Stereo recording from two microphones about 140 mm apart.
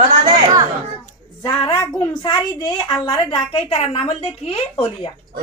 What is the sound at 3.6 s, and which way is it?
Speech, 45° left (ahead or behind).